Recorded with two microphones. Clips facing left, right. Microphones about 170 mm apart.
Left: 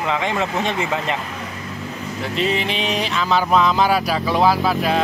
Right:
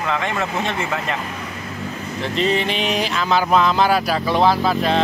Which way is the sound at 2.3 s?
Centre (ahead or behind).